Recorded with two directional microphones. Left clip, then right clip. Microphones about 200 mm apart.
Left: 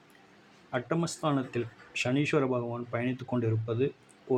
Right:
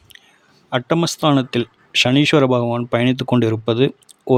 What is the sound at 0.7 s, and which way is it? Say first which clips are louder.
Speech: right 13 dB; 55° right (ahead or behind).